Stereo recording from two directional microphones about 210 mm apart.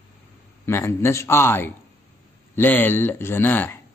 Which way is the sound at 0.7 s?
10° left (ahead or behind).